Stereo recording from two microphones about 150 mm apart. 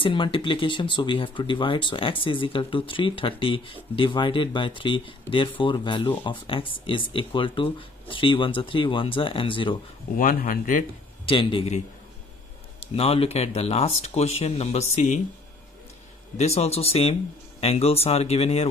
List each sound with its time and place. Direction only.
0.0 s speech: 35° left (ahead or behind)
10.1 s speech: 65° left (ahead or behind)
11.2 s speech: 35° left (ahead or behind)
12.8 s speech: 40° left (ahead or behind)
16.3 s speech: 45° left (ahead or behind)